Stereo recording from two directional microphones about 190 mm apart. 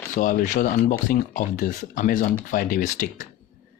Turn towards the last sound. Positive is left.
turn(degrees=45)  # may be behind; listen again after turning